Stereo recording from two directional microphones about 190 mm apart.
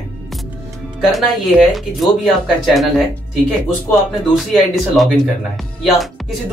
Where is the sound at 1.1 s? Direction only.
Centre (ahead or behind).